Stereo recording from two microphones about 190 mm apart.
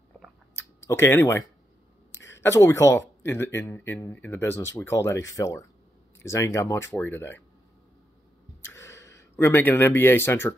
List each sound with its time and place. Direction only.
0.8 s speech: 15° left (ahead or behind)
2.4 s speech: 15° left (ahead or behind)
8.6 s speech: 15° left (ahead or behind)